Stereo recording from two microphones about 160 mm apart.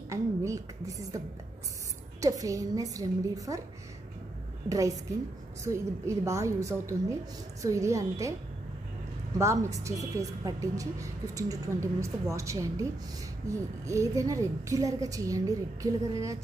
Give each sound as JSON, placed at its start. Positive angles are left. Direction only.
{"t": 0.1, "sound": "a sound", "side_deg": -20}
{"t": 2.1, "sound": "a woman's voice", "side_deg": -20}
{"t": 4.6, "sound": "a woman's voice", "side_deg": -20}
{"t": 9.4, "sound": "a woman's voice", "side_deg": -20}